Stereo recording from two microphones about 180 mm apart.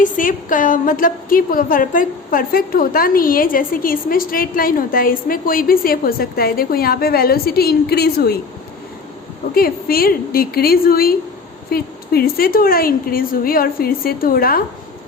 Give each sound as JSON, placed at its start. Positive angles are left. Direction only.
{"t": 0.0, "sound": "a woman's voice", "side_deg": 50}
{"t": 9.6, "sound": "a woman's voice", "side_deg": 55}